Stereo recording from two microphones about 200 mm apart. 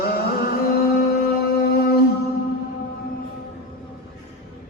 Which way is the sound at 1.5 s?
50° left (ahead or behind).